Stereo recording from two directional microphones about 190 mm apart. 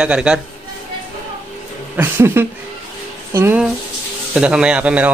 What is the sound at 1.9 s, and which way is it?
A man's voice, 10° right (ahead or behind).